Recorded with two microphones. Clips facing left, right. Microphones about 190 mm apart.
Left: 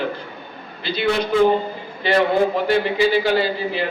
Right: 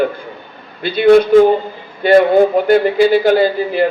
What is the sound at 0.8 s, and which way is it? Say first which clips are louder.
Speech: right 12 dB; 50° right (ahead or behind).